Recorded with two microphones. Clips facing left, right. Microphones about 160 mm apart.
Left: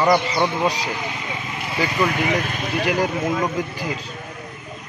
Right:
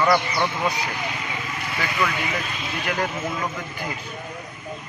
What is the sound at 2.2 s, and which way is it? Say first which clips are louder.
Speech: left 6 dB; 60° left (ahead or behind).